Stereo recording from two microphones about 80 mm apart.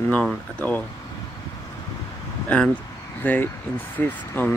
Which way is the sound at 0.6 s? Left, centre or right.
Centre.